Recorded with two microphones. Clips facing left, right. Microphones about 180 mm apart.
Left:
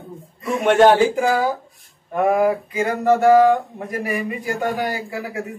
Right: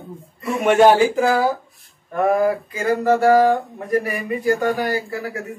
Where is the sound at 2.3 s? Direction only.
15° left (ahead or behind).